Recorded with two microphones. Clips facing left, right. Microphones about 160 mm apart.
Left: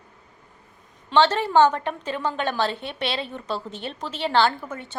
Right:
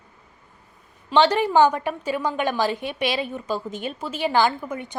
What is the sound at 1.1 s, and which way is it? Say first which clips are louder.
A woman's voice: right 1 dB; 15° right (ahead or behind).